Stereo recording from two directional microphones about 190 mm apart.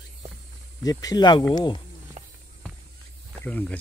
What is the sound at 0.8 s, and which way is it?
Speech, 20° left (ahead or behind).